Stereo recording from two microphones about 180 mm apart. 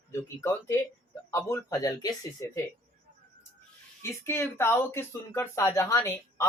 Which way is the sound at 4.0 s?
15° left (ahead or behind).